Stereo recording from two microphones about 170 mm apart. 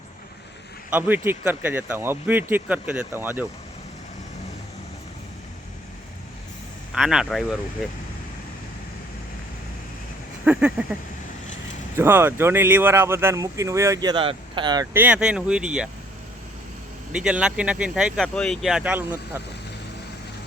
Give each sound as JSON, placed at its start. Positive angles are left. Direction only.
{"t": 0.9, "sound": "speech", "side_deg": -10}
{"t": 6.9, "sound": "speech", "side_deg": -5}
{"t": 10.4, "sound": "speech", "side_deg": -10}
{"t": 11.9, "sound": "speech", "side_deg": -15}
{"t": 14.9, "sound": "speech", "side_deg": -10}
{"t": 17.1, "sound": "speech", "side_deg": -5}